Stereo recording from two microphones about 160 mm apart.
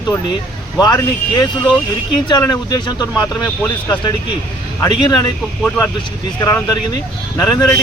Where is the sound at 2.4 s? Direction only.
25° left (ahead or behind).